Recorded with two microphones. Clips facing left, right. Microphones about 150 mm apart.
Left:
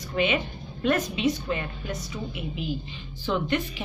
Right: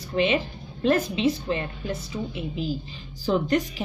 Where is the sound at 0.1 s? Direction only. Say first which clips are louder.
Right 2 dB; 30° right (ahead or behind).